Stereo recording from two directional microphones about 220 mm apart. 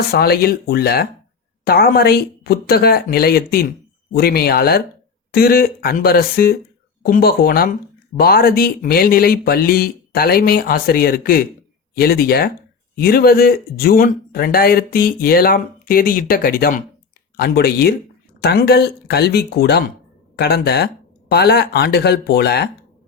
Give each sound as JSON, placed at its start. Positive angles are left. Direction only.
{"t": 0.1, "sound": "speech", "side_deg": 45}